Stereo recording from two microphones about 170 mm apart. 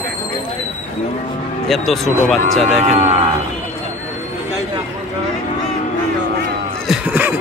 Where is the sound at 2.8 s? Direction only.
40° right (ahead or behind).